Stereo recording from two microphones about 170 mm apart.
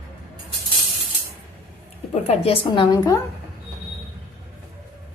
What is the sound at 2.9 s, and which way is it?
Speech, 20° left (ahead or behind).